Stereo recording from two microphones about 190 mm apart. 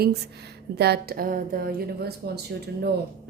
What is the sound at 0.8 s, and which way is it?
Speech, 55° right (ahead or behind).